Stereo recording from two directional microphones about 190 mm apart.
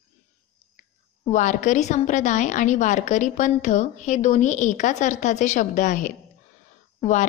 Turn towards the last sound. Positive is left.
turn(degrees=40)  # may be behind; listen again after turning